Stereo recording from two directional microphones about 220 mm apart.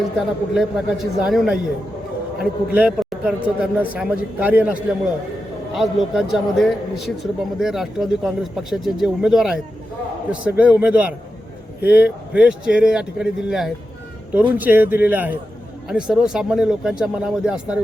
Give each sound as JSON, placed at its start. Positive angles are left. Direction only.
{"t": 0.2, "sound": "speech", "side_deg": 0}
{"t": 2.7, "sound": "speech", "side_deg": -5}